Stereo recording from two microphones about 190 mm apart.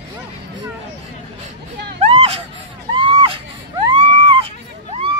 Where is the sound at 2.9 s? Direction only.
25° right (ahead or behind).